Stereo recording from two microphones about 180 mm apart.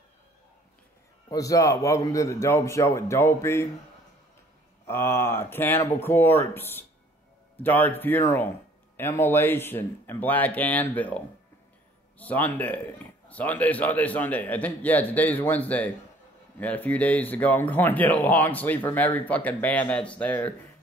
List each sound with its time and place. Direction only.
1.3 s speech: 20° left (ahead or behind)
4.8 s speech: 15° left (ahead or behind)